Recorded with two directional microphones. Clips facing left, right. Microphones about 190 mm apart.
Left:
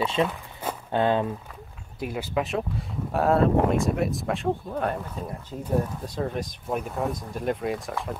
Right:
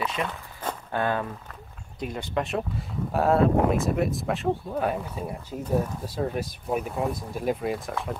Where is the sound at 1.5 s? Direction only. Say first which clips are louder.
Left 1 dB; 5° left (ahead or behind).